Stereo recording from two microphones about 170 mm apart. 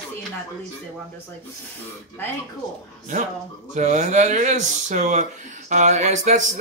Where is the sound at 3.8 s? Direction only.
45° right (ahead or behind).